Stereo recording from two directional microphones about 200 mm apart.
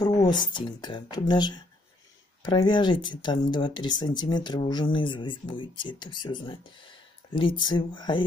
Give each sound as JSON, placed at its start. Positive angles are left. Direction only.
{"t": 0.0, "sound": "speech", "side_deg": 20}